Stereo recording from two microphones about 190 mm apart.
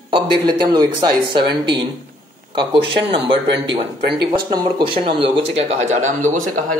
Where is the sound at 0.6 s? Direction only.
20° right (ahead or behind).